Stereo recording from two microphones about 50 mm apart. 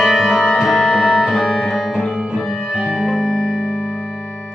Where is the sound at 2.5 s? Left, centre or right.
Centre.